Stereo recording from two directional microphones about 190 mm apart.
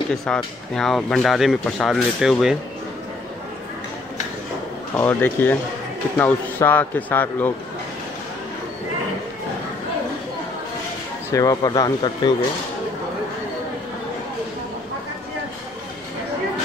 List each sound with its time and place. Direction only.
0.1 s speech: centre (ahead or behind)
4.9 s a man's voice: 10° left (ahead or behind)
11.3 s speech: 20° left (ahead or behind)